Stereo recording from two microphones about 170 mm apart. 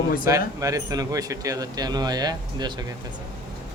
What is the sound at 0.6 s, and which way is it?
Speech, 20° right (ahead or behind).